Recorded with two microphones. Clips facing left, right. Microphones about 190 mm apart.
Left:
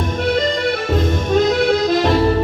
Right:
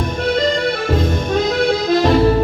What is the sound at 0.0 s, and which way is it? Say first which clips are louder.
Accordion: right 1 dB; centre (ahead or behind).